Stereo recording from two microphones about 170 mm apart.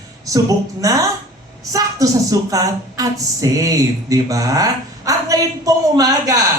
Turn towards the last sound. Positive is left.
turn(degrees=-20)  # may be behind; listen again after turning